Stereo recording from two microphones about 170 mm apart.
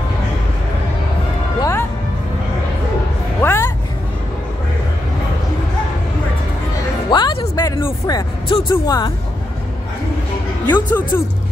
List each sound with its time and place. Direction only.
1.6 s music: 15° left (ahead or behind)
3.4 s music: 15° left (ahead or behind)
7.1 s music: 25° left (ahead or behind)
8.6 s speech: 20° left (ahead or behind)
10.7 s speech: 10° left (ahead or behind)